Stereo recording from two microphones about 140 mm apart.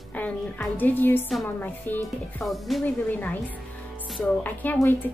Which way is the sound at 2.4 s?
Centre (ahead or behind).